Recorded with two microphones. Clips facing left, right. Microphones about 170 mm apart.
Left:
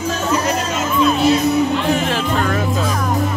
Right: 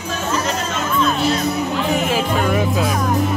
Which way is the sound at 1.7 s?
5° right (ahead or behind).